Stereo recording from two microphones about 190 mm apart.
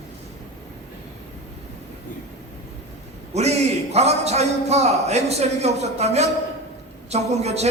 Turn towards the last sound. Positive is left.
turn(degrees=-35)  # may be behind; listen again after turning